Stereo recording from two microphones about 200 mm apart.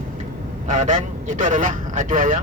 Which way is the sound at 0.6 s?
40° right (ahead or behind).